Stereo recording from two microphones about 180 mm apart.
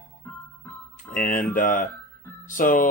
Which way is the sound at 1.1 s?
50° left (ahead or behind).